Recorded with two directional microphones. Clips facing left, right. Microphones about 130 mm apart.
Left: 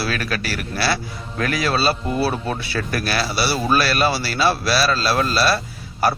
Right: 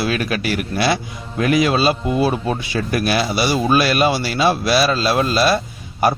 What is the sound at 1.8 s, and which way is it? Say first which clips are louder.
A man's voice: right 3 dB; 10° right (ahead or behind).